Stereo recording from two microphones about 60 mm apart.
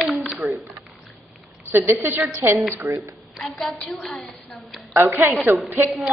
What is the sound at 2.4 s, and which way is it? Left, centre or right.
Speech, right.